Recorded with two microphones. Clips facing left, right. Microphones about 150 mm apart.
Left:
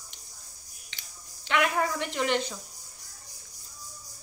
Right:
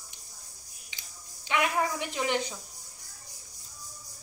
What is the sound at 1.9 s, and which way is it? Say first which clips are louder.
Speech: left 2 dB; 15° right (ahead or behind).